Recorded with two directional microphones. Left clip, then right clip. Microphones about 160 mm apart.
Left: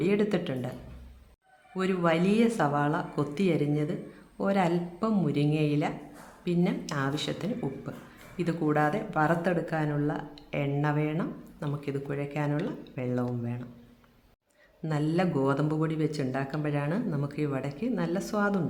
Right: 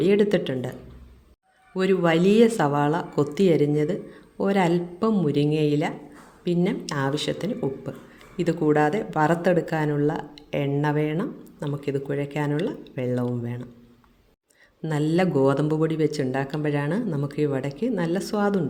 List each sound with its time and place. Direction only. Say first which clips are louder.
0.0 s speech: right 7 dB; 30° right (ahead or behind)
1.7 s speech: right 6 dB; 25° right (ahead or behind)
14.8 s speech: right 6 dB; 30° right (ahead or behind)